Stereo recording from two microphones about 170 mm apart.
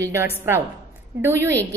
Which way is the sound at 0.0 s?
15° right (ahead or behind).